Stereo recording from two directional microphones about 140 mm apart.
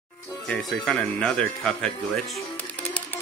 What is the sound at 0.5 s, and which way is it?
Speech, 5° left (ahead or behind).